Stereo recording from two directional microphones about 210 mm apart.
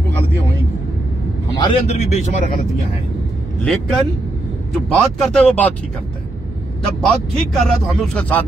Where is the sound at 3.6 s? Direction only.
5° left (ahead or behind).